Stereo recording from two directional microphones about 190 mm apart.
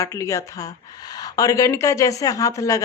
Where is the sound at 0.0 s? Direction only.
15° left (ahead or behind).